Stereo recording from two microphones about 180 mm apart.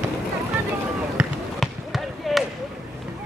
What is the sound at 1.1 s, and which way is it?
Basketball bounce, centre (ahead or behind).